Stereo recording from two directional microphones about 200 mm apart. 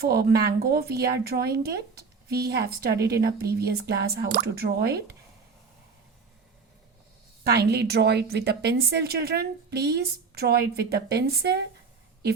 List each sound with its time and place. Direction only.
0.0 s speech: 50° right (ahead or behind)
7.5 s a woman's voice: 55° right (ahead or behind)